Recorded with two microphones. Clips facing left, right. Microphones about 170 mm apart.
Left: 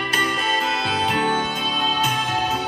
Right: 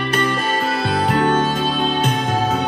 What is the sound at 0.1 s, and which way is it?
Music, 55° right (ahead or behind).